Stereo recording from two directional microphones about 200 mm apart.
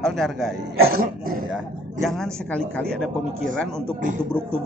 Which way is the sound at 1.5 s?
Centre (ahead or behind).